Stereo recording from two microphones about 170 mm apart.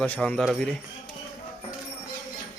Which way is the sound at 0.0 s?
5° left (ahead or behind).